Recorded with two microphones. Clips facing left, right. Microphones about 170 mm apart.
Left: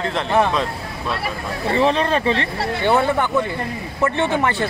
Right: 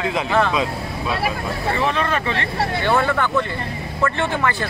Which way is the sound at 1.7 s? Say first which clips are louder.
Left 5 dB; 30° left (ahead or behind).